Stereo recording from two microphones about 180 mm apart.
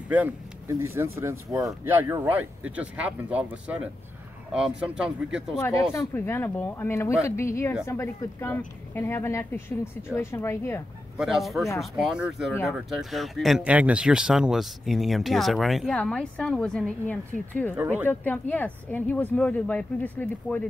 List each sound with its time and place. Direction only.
0.1 s speech: 10° right (ahead or behind)
5.9 s speech: 15° left (ahead or behind)
11.1 s speech: centre (ahead or behind)
17.7 s speech: 10° right (ahead or behind)
18.0 s speech: 10° left (ahead or behind)